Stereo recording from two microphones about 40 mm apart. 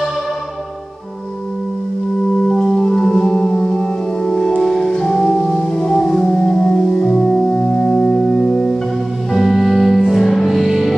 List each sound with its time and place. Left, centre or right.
2.4 s music: centre
8.0 s organ: centre
9.3 s music: centre